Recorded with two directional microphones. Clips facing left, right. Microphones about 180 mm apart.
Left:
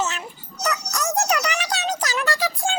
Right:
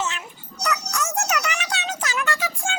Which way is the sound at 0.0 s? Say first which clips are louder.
Left 2 dB; 35° left (ahead or behind).